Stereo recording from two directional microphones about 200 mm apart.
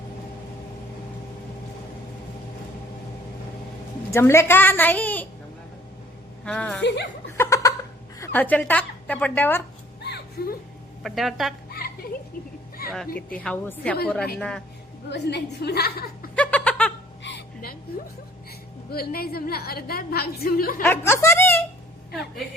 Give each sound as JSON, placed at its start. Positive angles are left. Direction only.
{"t": 4.1, "sound": "a woman's voice", "side_deg": 15}
{"t": 6.4, "sound": "whimper", "side_deg": 5}
{"t": 6.8, "sound": "speech", "side_deg": 60}
{"t": 7.3, "sound": "a sound", "side_deg": 15}
{"t": 8.2, "sound": "a woman's voice", "side_deg": 10}
{"t": 10.1, "sound": "a sound", "side_deg": 50}
{"t": 11.0, "sound": "speech", "side_deg": 0}
{"t": 12.8, "sound": "a sound", "side_deg": 50}
{"t": 13.1, "sound": "a woman's voice", "side_deg": 5}
{"t": 15.1, "sound": "a woman's voice", "side_deg": 55}
{"t": 16.3, "sound": "snicker", "side_deg": 5}
{"t": 17.2, "sound": "music", "side_deg": 55}
{"t": 18.9, "sound": "a woman's voice", "side_deg": 50}
{"t": 20.8, "sound": "a sound", "side_deg": 10}